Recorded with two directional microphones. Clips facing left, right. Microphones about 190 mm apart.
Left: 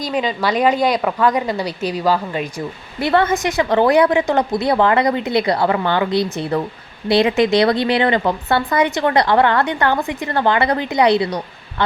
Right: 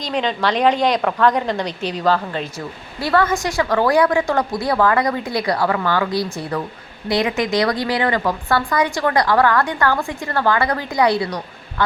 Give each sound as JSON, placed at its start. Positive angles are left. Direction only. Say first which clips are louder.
{"t": 0.0, "sound": "speech", "louder": "left 1 dB", "side_deg": 5}
{"t": 3.0, "sound": "speech", "louder": "left 2 dB", "side_deg": 20}